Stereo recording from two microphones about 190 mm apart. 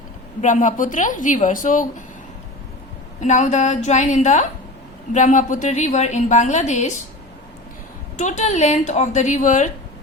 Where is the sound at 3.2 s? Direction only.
40° left (ahead or behind).